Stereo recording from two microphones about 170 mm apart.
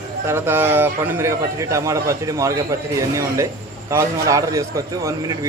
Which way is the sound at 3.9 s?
20° right (ahead or behind).